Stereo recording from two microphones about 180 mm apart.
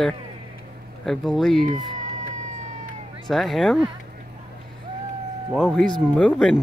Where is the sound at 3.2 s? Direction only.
Centre (ahead or behind).